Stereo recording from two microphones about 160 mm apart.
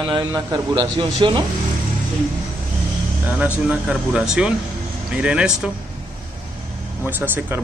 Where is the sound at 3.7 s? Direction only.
5° right (ahead or behind).